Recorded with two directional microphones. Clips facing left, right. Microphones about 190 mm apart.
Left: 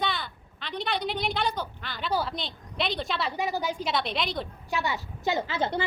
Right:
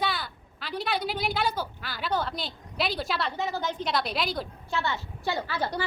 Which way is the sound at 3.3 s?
15° left (ahead or behind).